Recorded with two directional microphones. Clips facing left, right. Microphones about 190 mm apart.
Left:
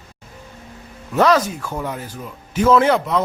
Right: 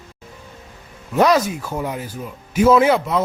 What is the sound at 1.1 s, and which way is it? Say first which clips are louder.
Speech: even; 10° right (ahead or behind).